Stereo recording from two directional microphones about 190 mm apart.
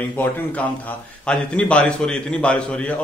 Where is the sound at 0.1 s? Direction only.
10° left (ahead or behind).